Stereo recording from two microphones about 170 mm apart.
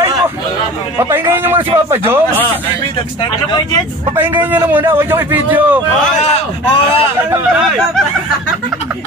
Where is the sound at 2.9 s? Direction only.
25° left (ahead or behind).